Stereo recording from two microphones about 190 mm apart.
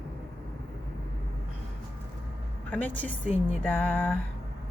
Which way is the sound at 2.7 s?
10° left (ahead or behind).